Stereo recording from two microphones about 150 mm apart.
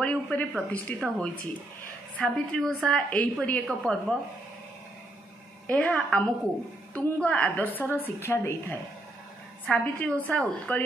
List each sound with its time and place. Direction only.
0.0 s a woman's voice: 5° left (ahead or behind)
5.7 s a woman's voice: 5° left (ahead or behind)